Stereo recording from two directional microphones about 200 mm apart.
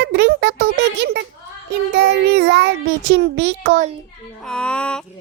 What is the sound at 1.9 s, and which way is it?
Child singing, 55° right (ahead or behind).